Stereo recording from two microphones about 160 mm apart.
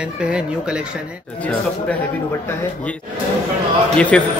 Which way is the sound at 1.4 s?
10° left (ahead or behind).